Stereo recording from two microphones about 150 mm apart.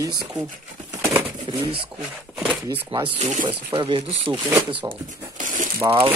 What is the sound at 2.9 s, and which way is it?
Speech, 40° right (ahead or behind).